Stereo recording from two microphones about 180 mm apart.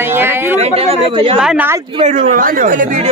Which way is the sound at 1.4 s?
5° right (ahead or behind).